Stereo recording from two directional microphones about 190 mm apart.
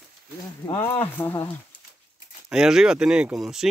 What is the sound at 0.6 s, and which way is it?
Speech, 15° left (ahead or behind).